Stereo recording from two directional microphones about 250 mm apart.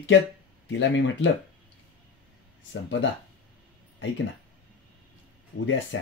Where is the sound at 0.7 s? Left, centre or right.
Left.